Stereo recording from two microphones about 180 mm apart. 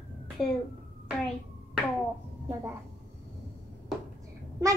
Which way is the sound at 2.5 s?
15° right (ahead or behind).